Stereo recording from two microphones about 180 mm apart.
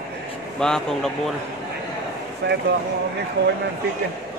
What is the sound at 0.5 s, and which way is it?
Speech, 5° left (ahead or behind).